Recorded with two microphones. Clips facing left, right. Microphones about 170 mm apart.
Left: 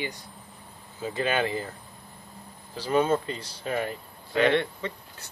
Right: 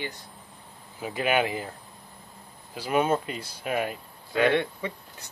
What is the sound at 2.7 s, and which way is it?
Speech, 10° right (ahead or behind).